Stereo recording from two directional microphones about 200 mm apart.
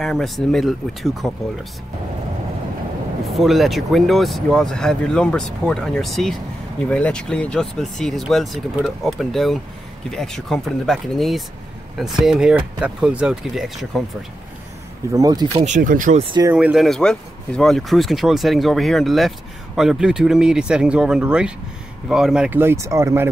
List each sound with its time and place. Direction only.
0.0 s speech: centre (ahead or behind)
3.3 s speech: centre (ahead or behind)
15.1 s speech: 20° right (ahead or behind)
15.6 s speech: 40° right (ahead or behind)
16.3 s speech: 20° right (ahead or behind)
16.5 s speech: 5° right (ahead or behind)